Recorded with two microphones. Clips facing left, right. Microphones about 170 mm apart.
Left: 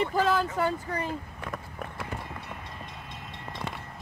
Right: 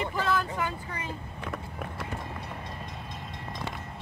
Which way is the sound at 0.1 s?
35° left (ahead or behind).